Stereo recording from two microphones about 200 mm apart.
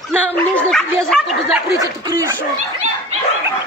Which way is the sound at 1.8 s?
20° right (ahead or behind).